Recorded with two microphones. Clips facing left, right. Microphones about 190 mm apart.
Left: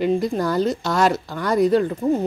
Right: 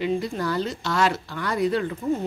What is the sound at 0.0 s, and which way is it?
Speech, 45° left (ahead or behind).